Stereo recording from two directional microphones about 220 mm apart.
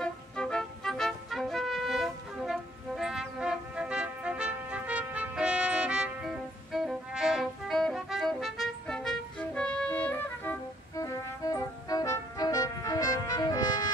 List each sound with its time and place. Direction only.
0.0 s music: 5° left (ahead or behind)